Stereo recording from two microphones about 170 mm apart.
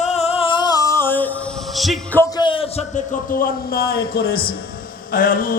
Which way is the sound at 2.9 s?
60° left (ahead or behind).